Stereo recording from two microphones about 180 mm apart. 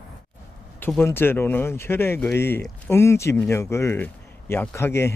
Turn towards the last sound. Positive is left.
turn(degrees=15)  # may be behind; listen again after turning